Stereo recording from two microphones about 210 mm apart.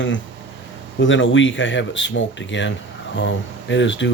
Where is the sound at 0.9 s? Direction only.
65° left (ahead or behind).